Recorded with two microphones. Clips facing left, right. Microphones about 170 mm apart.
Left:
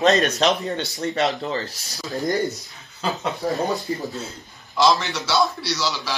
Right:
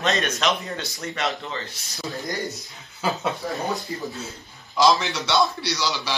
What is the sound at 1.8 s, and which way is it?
Speech, 40° left (ahead or behind).